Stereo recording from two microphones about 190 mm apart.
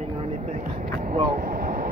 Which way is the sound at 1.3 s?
50° right (ahead or behind).